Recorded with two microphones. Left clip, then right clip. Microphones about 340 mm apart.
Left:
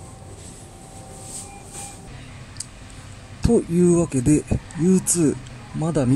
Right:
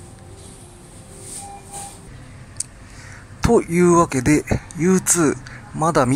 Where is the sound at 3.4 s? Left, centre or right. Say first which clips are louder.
Right 3 dB; right.